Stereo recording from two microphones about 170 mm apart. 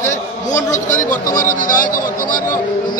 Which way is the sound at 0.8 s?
50° left (ahead or behind).